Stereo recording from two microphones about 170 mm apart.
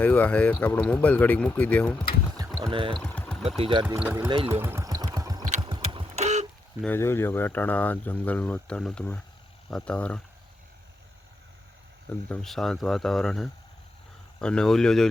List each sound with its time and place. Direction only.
0.0 s speech: 10° left (ahead or behind)
2.6 s speech: 30° right (ahead or behind)
3.0 s engine: 5° left (ahead or behind)
3.6 s speech: 30° right (ahead or behind)
3.8 s speech: 10° right (ahead or behind)
4.6 s vehicle: 15° right (ahead or behind)
5.6 s sewing machine: 30° right (ahead or behind)
6.8 s speech: 10° left (ahead or behind)
12.3 s speech: centre (ahead or behind)